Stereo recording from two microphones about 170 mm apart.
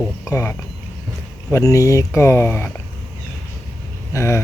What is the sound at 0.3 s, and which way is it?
Speech, 15° left (ahead or behind).